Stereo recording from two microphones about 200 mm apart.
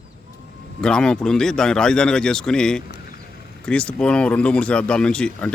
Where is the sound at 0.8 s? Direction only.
5° left (ahead or behind).